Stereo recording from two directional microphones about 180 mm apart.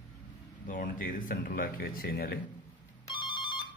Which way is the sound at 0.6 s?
50° left (ahead or behind).